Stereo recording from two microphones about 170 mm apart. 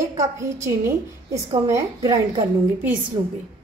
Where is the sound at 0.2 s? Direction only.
15° right (ahead or behind).